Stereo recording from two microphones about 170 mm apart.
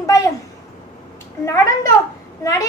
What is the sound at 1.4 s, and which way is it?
Speech, 15° left (ahead or behind).